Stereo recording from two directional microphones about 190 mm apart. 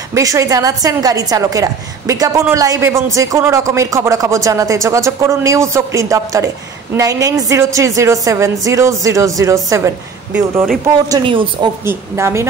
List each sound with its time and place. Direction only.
0.1 s speech: 15° right (ahead or behind)
11.1 s speech: 25° right (ahead or behind)
11.8 s speech: 15° right (ahead or behind)